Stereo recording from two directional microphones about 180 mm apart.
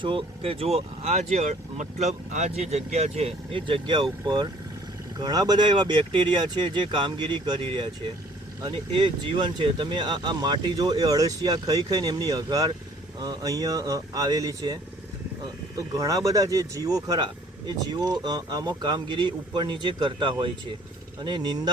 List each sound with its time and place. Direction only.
0.0 s speech: 30° right (ahead or behind)
5.2 s speech: 20° right (ahead or behind)
16.0 s speech: 20° right (ahead or behind)